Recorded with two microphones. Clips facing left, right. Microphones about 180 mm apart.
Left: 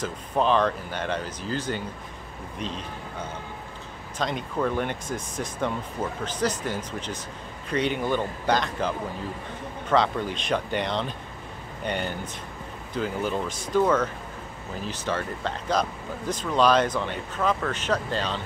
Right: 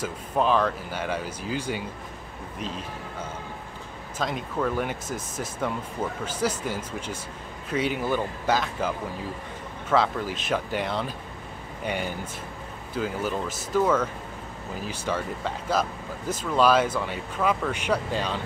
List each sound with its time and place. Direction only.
0.0 s speech: 5° right (ahead or behind)
4.2 s speech: 5° right (ahead or behind)